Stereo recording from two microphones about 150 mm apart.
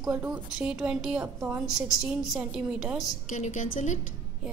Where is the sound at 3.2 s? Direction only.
55° left (ahead or behind).